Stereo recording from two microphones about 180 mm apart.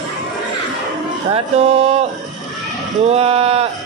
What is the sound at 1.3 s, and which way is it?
Music, 35° right (ahead or behind).